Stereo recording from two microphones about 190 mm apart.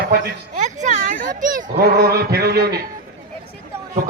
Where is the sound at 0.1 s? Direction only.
40° right (ahead or behind).